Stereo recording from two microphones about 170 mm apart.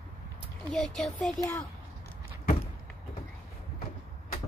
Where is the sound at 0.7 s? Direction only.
5° left (ahead or behind).